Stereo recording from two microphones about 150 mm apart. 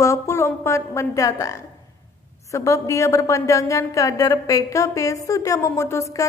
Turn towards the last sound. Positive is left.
turn(degrees=20)  # may be behind; listen again after turning